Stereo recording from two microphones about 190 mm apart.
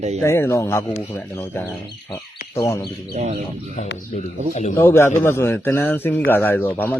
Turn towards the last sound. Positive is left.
turn(degrees=10)  # may be behind; listen again after turning